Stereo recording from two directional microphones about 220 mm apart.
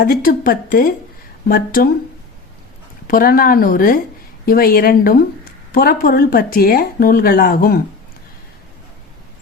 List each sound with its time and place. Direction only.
0.0 s speech: 40° left (ahead or behind)
3.1 s speech: 40° left (ahead or behind)